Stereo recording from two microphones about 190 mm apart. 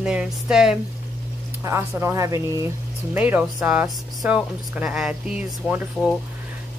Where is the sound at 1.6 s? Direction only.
15° right (ahead or behind).